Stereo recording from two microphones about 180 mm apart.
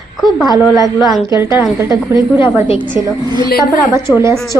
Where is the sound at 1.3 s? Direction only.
15° right (ahead or behind).